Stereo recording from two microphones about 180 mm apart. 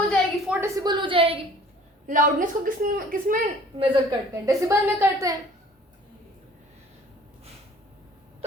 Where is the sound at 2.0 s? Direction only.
45° right (ahead or behind).